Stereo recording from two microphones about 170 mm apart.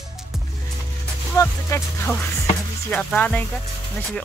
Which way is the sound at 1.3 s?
15° left (ahead or behind).